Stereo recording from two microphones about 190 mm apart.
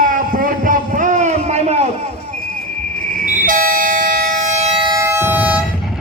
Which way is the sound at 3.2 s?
45° right (ahead or behind).